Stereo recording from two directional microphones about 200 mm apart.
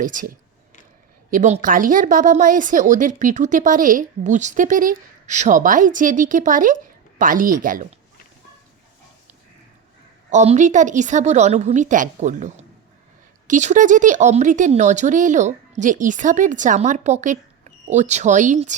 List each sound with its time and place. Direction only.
0.0 s a woman's voice: 40° right (ahead or behind)
1.3 s a woman's voice: 40° right (ahead or behind)
10.2 s a woman's voice: 35° right (ahead or behind)
13.5 s a woman's voice: 35° right (ahead or behind)